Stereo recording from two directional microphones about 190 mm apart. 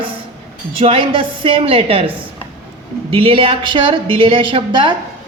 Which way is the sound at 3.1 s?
30° right (ahead or behind).